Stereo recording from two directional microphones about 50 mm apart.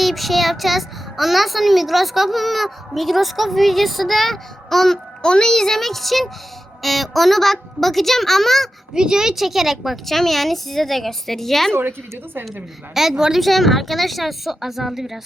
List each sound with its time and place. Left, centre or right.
0.0 s a child's voice: centre
9.0 s a child's voice: centre
11.7 s a woman's voice: right
12.9 s a woman's voice: centre
13.4 s a child's voice: centre